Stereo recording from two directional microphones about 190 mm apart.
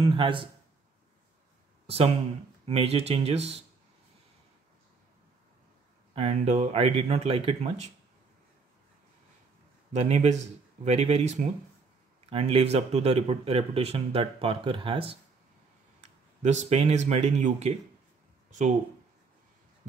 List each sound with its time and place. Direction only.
0.0 s a man's voice: 25° right (ahead or behind)
1.9 s speech: 30° right (ahead or behind)
6.1 s speech: 35° right (ahead or behind)
9.9 s speech: 35° right (ahead or behind)